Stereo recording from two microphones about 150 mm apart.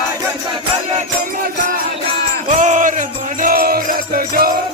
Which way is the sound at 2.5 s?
60° right (ahead or behind).